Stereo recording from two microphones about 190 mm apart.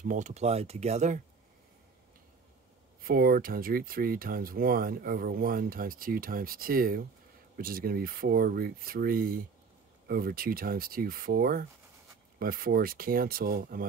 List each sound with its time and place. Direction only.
0.0 s speech: 40° right (ahead or behind)
3.0 s speech: 50° right (ahead or behind)